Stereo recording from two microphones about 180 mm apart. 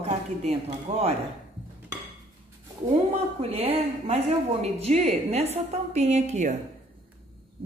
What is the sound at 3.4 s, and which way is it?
A woman's voice, 35° right (ahead or behind).